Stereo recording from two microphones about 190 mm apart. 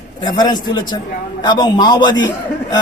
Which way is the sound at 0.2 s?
20° left (ahead or behind).